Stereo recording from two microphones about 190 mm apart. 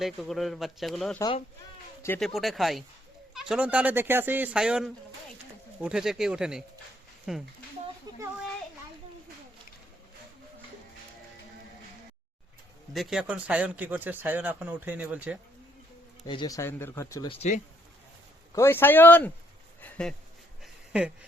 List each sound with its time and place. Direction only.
0.0 s speech: centre (ahead or behind)
2.0 s speech: 10° left (ahead or behind)
2.2 s speech: centre (ahead or behind)
8.1 s a sound: 20° right (ahead or behind)
12.9 s speech: centre (ahead or behind)
16.2 s speech: 20° left (ahead or behind)
17.2 s speech: 35° left (ahead or behind)
18.5 s speech: 10° left (ahead or behind)
19.8 s a sound: 5° left (ahead or behind)